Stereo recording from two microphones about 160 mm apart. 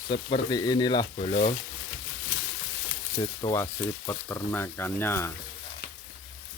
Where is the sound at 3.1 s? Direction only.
20° left (ahead or behind).